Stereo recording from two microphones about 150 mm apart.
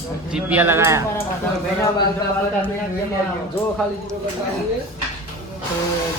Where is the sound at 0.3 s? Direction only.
10° right (ahead or behind).